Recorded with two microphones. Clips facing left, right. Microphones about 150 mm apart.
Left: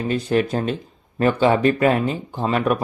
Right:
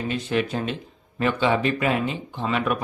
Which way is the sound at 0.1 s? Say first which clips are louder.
Left 6 dB; 40° left (ahead or behind).